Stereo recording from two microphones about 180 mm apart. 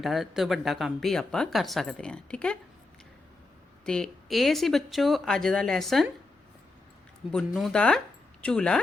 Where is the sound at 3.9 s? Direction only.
Centre (ahead or behind).